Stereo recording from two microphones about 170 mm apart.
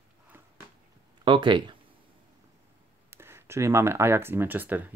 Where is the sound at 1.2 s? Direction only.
30° right (ahead or behind).